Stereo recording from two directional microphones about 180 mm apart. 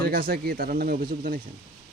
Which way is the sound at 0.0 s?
55° right (ahead or behind).